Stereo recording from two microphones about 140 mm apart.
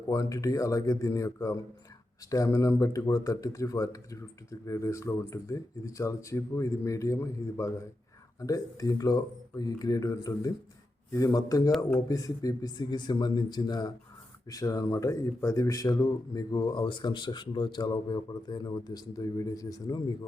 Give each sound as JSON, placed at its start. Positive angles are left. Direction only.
{"t": 0.1, "sound": "speech", "side_deg": 25}